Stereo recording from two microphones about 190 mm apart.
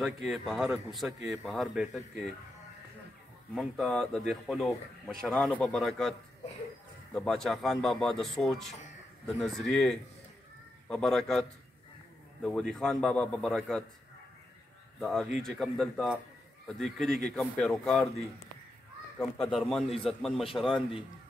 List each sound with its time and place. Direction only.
0.0 s speech: centre (ahead or behind)
3.5 s speech: centre (ahead or behind)
7.2 s speech: 5° left (ahead or behind)
12.4 s speech: 5° left (ahead or behind)
15.0 s speech: centre (ahead or behind)
19.3 s speech: centre (ahead or behind)
20.6 s a man's voice: 25° left (ahead or behind)